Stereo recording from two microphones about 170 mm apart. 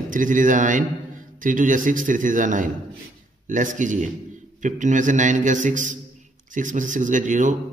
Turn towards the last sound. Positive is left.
turn(degrees=-50)  # may be behind; listen again after turning